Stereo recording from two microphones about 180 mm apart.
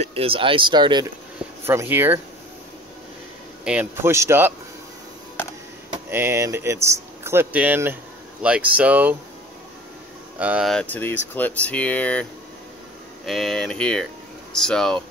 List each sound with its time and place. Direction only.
0.0 s speech: 30° right (ahead or behind)
1.6 s speech: 15° right (ahead or behind)
3.6 s speech: 10° right (ahead or behind)
6.0 s speech: 15° right (ahead or behind)
10.4 s speech: 10° right (ahead or behind)
10.7 s speech: 5° left (ahead or behind)